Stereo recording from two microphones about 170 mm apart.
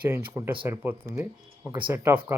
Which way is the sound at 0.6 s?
10° right (ahead or behind).